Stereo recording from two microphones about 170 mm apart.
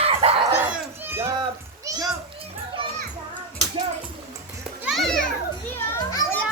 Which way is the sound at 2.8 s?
30° right (ahead or behind).